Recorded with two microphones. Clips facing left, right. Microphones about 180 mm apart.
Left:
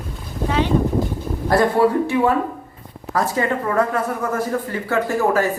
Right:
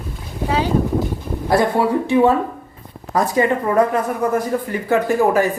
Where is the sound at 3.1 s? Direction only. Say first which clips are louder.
Right 3 dB; 15° right (ahead or behind).